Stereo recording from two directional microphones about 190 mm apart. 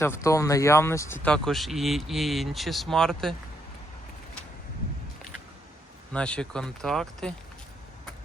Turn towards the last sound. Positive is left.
turn(degrees=0)  # may be behind; listen again after turning